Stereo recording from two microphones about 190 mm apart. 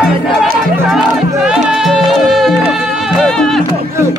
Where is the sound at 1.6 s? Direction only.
5° right (ahead or behind).